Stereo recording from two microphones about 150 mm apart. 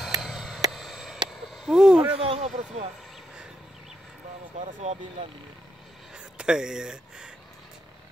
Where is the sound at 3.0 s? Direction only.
Centre (ahead or behind).